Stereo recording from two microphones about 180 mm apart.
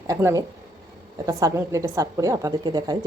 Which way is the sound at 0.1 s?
15° right (ahead or behind).